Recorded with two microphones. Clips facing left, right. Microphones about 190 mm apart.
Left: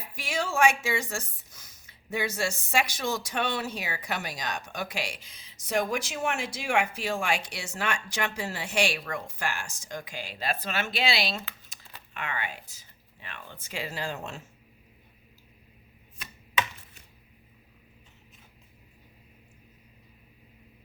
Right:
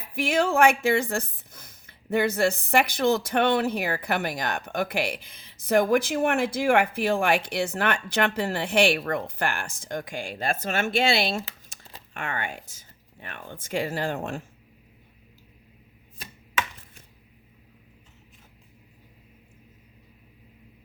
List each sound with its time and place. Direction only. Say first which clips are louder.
0.0 s speech: right 8 dB; 55° right (ahead or behind)